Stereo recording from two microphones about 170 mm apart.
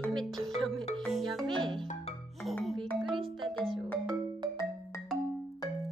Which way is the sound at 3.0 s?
30° right (ahead or behind).